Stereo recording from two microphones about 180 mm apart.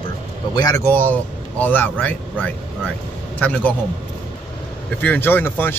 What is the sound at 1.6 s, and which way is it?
Speech, 10° left (ahead or behind).